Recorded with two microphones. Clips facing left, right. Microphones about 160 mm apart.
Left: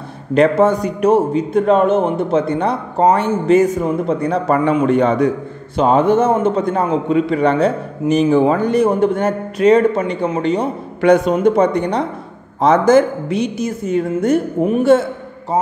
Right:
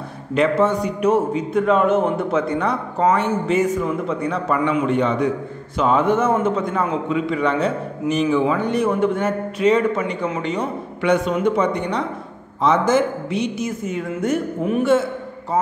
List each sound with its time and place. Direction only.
0.3 s a man's voice: 40° left (ahead or behind)